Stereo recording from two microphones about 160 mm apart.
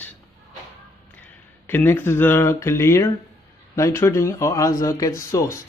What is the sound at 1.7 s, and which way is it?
Speech, 15° left (ahead or behind).